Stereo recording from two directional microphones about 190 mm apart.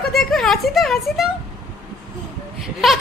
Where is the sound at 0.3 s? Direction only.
Centre (ahead or behind).